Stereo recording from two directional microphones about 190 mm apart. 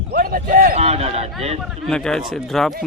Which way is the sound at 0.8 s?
35° right (ahead or behind).